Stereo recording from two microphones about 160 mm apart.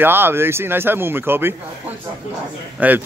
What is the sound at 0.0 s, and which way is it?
Speech, 15° right (ahead or behind).